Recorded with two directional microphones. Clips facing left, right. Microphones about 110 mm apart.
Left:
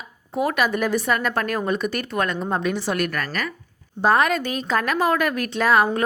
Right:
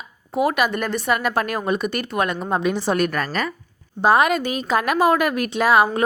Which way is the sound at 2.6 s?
20° right (ahead or behind).